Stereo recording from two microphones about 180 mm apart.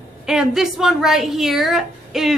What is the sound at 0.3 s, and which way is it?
A woman's voice, centre (ahead or behind).